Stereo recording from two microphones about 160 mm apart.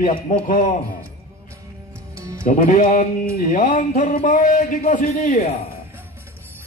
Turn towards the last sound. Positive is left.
turn(degrees=60)  # may be behind; listen again after turning